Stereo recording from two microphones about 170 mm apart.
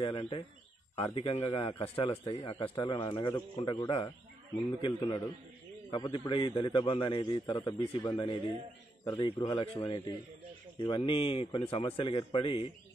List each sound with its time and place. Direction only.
0.0 s a man's voice: 30° left (ahead or behind)